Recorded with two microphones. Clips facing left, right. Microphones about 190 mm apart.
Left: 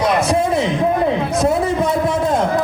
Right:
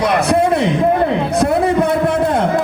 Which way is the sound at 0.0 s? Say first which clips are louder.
Right 2 dB; 60° right (ahead or behind).